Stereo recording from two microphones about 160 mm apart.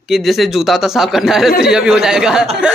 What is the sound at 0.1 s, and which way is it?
Speech, centre (ahead or behind).